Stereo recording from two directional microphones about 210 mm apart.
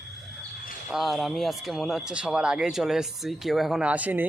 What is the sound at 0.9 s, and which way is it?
A man's voice, centre (ahead or behind).